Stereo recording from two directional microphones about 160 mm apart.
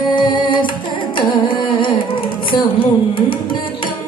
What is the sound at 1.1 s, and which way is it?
Carnatic music, 30° left (ahead or behind).